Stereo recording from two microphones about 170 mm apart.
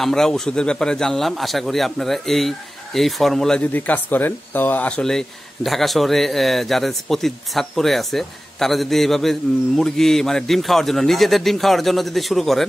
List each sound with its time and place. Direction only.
0.0 s a man's voice: 5° left (ahead or behind)